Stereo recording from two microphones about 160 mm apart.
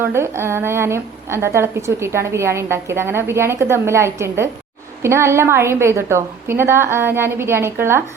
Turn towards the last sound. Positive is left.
turn(degrees=-15)  # may be behind; listen again after turning